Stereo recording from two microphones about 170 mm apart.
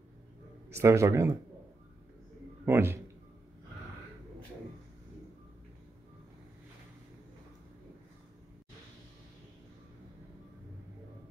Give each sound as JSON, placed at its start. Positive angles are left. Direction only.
{"t": 0.7, "sound": "a man's voice", "side_deg": -15}
{"t": 2.6, "sound": "a man's voice", "side_deg": -15}